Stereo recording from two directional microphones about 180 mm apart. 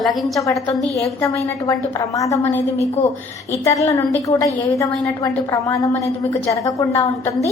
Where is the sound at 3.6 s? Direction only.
15° left (ahead or behind).